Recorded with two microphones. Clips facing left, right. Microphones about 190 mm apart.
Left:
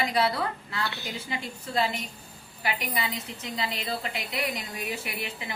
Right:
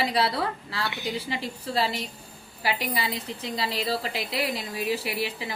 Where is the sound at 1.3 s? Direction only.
35° right (ahead or behind).